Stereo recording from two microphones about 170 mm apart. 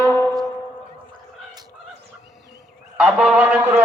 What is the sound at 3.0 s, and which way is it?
Speech, 5° right (ahead or behind).